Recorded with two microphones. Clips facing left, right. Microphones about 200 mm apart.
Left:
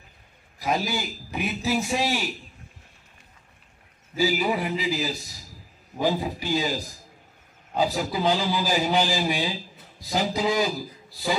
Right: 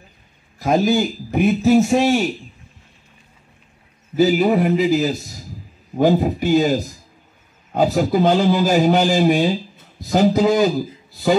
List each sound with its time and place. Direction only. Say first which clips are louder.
0.6 s a man's voice: right 10 dB; 50° right (ahead or behind)
4.2 s a man's voice: right 9 dB; 55° right (ahead or behind)